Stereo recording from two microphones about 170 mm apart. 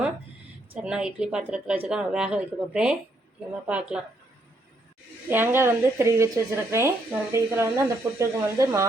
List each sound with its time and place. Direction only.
0.7 s speech: 5° right (ahead or behind)
5.3 s speech: 10° right (ahead or behind)